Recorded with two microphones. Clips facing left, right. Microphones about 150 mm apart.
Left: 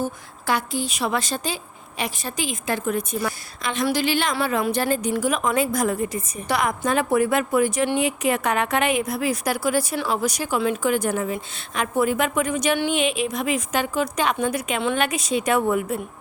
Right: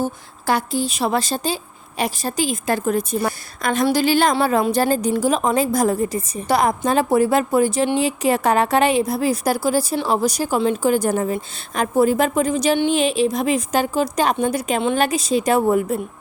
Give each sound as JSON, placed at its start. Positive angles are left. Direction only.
{"t": 0.0, "sound": "a woman's voice", "side_deg": -35}